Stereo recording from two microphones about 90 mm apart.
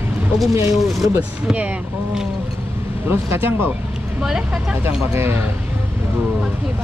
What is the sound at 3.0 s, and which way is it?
Speech, 25° right (ahead or behind).